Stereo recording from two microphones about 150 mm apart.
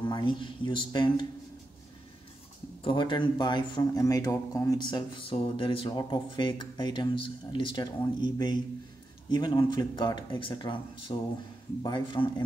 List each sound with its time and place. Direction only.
0.0 s a man's voice: 35° left (ahead or behind)
2.8 s a man's voice: 35° left (ahead or behind)